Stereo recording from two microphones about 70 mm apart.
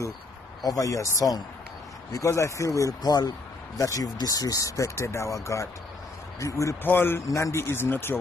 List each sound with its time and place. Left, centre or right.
0.7 s speech: left
3.0 s speech: left
3.8 s speech: left
6.8 s speech: left
7.2 s speech: left
7.5 s speech: left